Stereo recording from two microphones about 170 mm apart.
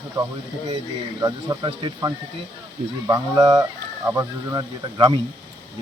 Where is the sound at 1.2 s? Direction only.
25° right (ahead or behind).